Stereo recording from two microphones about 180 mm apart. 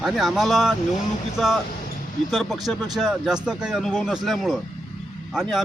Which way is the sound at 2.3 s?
Centre (ahead or behind).